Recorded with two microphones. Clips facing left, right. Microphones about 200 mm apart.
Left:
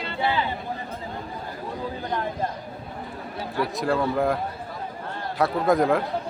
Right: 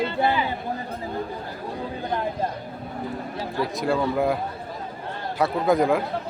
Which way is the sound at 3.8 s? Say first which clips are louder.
Right 1 dB; centre (ahead or behind).